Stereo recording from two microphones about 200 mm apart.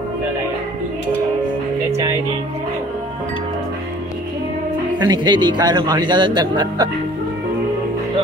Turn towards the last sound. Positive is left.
turn(degrees=-20)  # may be behind; listen again after turning